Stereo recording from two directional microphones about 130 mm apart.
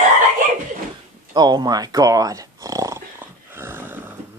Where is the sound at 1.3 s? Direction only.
35° right (ahead or behind); by 4.2 s 15° right (ahead or behind).